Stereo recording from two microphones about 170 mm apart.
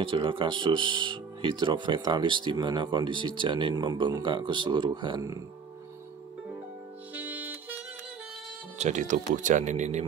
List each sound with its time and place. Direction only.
0.0 s speech: 30° right (ahead or behind)
7.2 s music: 10° right (ahead or behind)
8.7 s speech: 45° right (ahead or behind)